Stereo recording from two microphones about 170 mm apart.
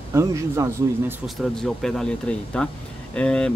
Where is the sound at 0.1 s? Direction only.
15° right (ahead or behind).